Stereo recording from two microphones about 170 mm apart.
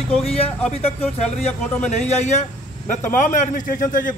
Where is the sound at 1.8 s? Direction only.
40° left (ahead or behind).